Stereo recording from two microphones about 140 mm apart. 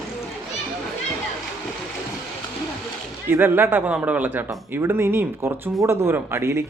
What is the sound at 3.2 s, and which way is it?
Speech, 15° right (ahead or behind).